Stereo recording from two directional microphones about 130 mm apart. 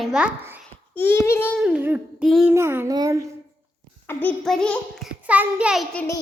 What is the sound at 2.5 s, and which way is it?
Speech, 20° right (ahead or behind).